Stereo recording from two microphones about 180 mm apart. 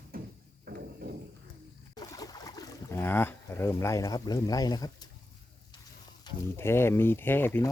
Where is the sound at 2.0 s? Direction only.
20° left (ahead or behind).